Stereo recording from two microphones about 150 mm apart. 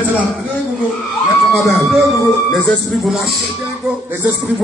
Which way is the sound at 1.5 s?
Centre (ahead or behind).